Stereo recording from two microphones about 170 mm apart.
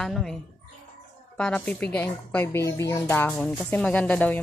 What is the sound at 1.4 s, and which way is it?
Speech, 5° left (ahead or behind).